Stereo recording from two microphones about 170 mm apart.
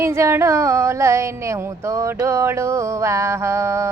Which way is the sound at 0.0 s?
15° right (ahead or behind).